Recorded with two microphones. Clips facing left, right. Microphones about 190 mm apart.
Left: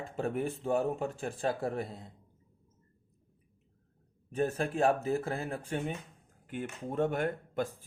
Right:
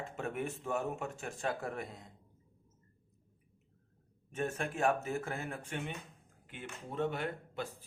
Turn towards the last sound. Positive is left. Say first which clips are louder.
# left 6 dB
turn(degrees=50)  # may be behind; listen again after turning